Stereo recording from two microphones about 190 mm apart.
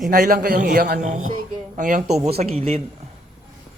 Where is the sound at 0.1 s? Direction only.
50° right (ahead or behind).